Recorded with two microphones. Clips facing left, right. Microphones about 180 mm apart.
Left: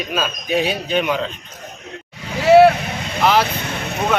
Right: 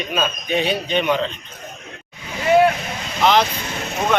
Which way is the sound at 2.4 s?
80° left.